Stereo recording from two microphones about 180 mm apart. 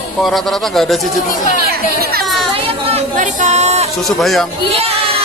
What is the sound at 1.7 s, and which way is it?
Speech, 55° right (ahead or behind).